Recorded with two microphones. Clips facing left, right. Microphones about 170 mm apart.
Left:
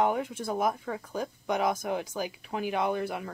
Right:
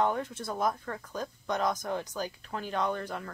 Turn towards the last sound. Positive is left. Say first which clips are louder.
# left 3 dB
turn(degrees=10)  # may be behind; listen again after turning